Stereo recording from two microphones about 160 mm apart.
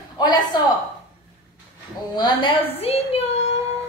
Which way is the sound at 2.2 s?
25° left (ahead or behind).